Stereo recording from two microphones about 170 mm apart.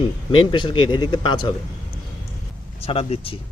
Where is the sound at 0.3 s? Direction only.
30° left (ahead or behind).